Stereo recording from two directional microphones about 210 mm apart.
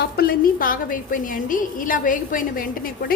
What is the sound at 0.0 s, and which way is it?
A woman's voice, 45° left (ahead or behind).